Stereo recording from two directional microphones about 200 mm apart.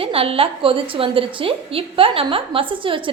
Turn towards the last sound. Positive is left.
turn(degrees=-25)  # may be behind; listen again after turning